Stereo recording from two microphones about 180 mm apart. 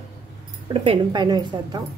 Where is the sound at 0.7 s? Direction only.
25° right (ahead or behind).